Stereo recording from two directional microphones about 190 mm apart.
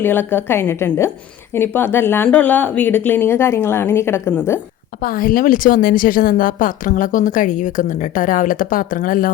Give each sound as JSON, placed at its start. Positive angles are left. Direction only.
{"t": 0.0, "sound": "speech", "side_deg": 10}
{"t": 5.0, "sound": "speech", "side_deg": 45}